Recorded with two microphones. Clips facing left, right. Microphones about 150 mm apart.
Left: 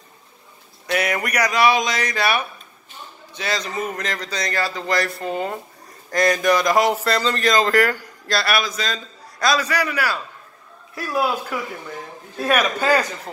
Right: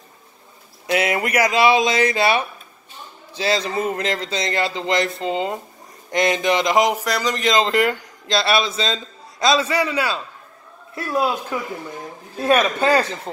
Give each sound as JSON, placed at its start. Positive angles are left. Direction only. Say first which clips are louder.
{"t": 0.8, "sound": "a man's voice", "louder": "right 2 dB", "side_deg": -25}